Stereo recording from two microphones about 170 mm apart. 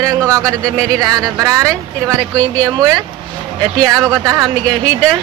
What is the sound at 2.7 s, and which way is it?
Speech, 20° right (ahead or behind).